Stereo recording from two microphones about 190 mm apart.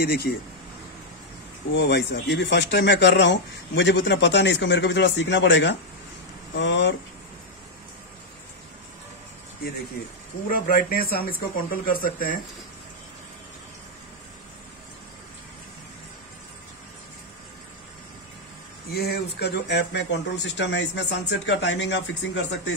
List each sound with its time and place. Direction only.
0.0 s speech: 55° left (ahead or behind)
1.7 s speech: 60° left (ahead or behind)
10.0 s speech: 55° left (ahead or behind)
18.9 s speech: 55° left (ahead or behind)